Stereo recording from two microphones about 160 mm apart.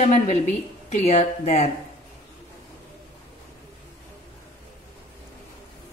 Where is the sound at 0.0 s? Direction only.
45° left (ahead or behind).